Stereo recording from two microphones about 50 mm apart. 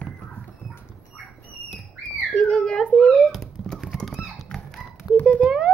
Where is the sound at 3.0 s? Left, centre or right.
Centre.